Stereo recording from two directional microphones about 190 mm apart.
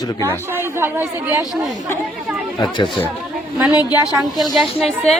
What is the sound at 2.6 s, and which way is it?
A woman's voice, 25° left (ahead or behind).